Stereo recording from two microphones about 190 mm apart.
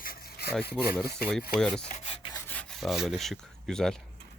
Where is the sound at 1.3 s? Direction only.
5° left (ahead or behind).